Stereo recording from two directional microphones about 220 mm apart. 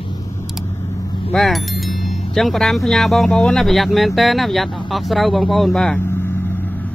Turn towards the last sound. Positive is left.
turn(degrees=5)  # may be behind; listen again after turning